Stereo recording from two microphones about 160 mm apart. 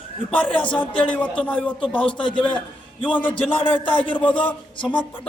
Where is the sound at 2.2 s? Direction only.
30° left (ahead or behind).